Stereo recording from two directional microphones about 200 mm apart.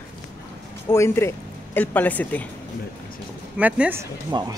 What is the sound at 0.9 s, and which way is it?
Speech, 15° left (ahead or behind).